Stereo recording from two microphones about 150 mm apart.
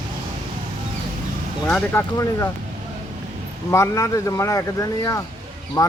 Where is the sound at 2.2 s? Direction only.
20° left (ahead or behind).